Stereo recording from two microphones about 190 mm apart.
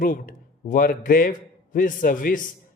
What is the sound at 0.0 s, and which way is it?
A man's voice, 45° left (ahead or behind).